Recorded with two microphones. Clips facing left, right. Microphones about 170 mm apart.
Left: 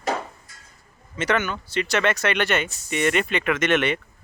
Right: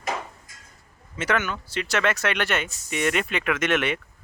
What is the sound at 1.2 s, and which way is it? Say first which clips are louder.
Speech: left 2 dB; 5° right (ahead or behind).